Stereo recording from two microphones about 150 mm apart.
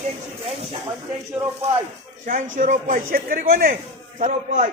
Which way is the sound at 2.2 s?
60° right (ahead or behind).